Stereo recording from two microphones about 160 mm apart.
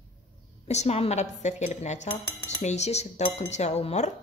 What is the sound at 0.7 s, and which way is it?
Speech, 45° left (ahead or behind).